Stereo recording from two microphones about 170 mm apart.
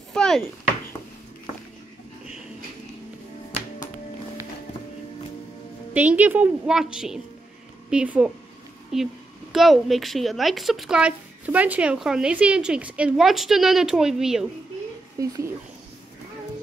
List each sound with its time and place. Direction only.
0.1 s a sound: 5° left (ahead or behind)
5.9 s a woman's voice: 10° right (ahead or behind)
15.1 s speech: 20° right (ahead or behind)